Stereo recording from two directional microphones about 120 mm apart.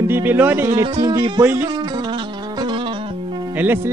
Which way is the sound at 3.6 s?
15° right (ahead or behind).